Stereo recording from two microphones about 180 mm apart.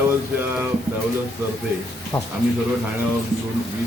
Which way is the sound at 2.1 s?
25° left (ahead or behind).